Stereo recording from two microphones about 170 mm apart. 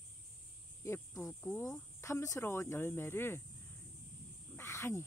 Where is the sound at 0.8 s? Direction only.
15° left (ahead or behind).